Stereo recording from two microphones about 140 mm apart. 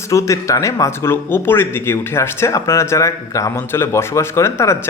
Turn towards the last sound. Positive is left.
turn(degrees=20)  # may be behind; listen again after turning